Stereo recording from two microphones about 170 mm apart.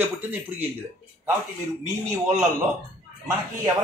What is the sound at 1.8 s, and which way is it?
Speech, 15° right (ahead or behind).